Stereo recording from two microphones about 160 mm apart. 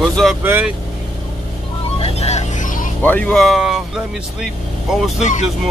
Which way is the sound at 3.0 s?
10° left (ahead or behind).